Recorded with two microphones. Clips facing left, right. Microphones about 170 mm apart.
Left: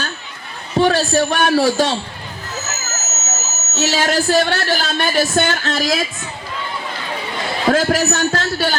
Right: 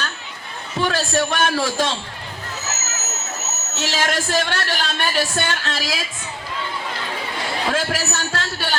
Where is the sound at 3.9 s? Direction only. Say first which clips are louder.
Left 5 dB; 40° left (ahead or behind).